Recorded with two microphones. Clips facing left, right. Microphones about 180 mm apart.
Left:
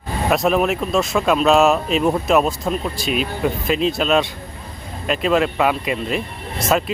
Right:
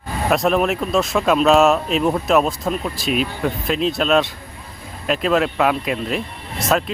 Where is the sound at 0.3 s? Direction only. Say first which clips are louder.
Even; centre (ahead or behind).